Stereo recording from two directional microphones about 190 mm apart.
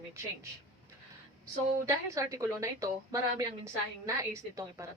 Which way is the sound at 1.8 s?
15° right (ahead or behind).